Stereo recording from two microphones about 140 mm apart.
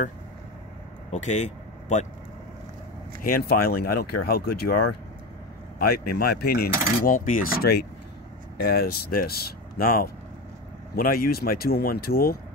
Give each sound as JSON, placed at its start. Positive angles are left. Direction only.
{"t": 1.1, "sound": "speech", "side_deg": 55}
{"t": 3.3, "sound": "speech", "side_deg": 90}
{"t": 5.8, "sound": "speech", "side_deg": 90}
{"t": 7.0, "sound": "cutlery", "side_deg": 80}
{"t": 8.5, "sound": "speech", "side_deg": 90}